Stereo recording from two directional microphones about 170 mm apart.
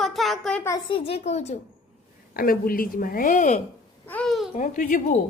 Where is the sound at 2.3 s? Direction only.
60° left (ahead or behind).